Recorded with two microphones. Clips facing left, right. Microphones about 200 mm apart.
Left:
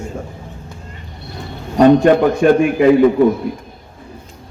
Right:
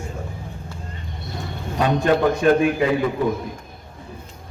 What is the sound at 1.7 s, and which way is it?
Speech, 50° left (ahead or behind).